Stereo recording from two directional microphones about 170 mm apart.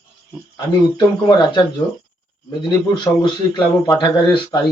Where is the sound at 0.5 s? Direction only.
25° left (ahead or behind).